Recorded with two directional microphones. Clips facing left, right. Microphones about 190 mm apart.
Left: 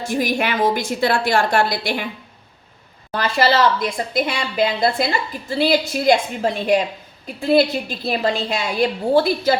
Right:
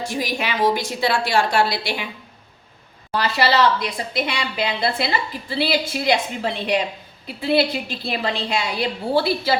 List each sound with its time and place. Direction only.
0.1 s a woman's voice: 50° left (ahead or behind)
3.1 s a woman's voice: 50° left (ahead or behind)